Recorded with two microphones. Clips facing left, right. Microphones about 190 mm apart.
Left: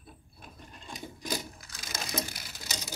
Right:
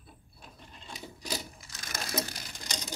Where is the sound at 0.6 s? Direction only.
45° left (ahead or behind).